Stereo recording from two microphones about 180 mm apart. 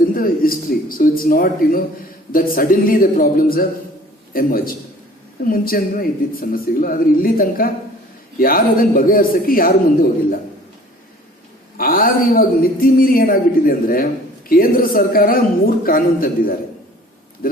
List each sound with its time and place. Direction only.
0.1 s a man's voice: 55° left (ahead or behind)
11.8 s a man's voice: 50° left (ahead or behind)